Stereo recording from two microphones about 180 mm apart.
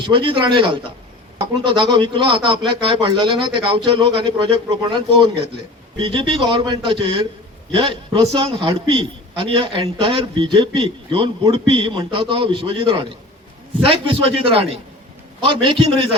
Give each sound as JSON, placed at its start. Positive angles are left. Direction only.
{"t": 0.0, "sound": "a man's voice", "side_deg": -30}